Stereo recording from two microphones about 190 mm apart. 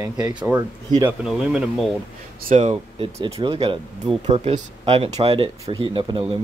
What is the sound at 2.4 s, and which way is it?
Speech, 40° right (ahead or behind).